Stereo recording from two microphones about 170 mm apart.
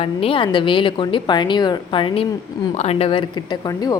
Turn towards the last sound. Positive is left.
turn(degrees=35)  # may be behind; listen again after turning